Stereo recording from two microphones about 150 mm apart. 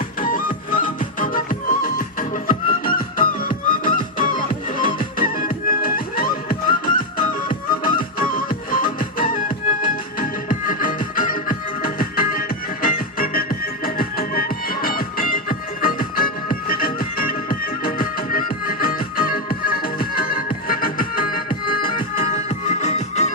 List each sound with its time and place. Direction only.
0.2 s music: 65° left (ahead or behind)
22.1 s music: 50° left (ahead or behind)